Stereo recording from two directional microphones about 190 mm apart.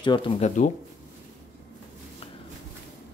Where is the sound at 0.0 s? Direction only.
25° left (ahead or behind).